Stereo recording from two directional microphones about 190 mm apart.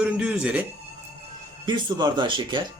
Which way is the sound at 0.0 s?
5° right (ahead or behind).